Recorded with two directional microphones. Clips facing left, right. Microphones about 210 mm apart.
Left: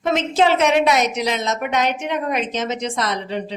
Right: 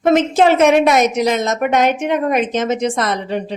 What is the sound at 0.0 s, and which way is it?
A woman's voice, 50° right (ahead or behind).